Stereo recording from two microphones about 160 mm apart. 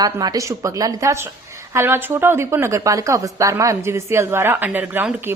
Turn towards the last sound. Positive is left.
turn(degrees=-10)  # may be behind; listen again after turning